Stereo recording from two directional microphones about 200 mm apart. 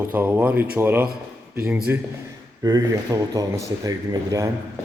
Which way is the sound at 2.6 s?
20° right (ahead or behind).